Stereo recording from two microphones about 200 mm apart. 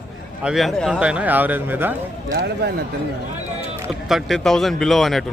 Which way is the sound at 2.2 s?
50° right (ahead or behind).